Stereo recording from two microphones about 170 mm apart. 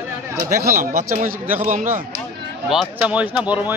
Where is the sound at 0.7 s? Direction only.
55° right (ahead or behind).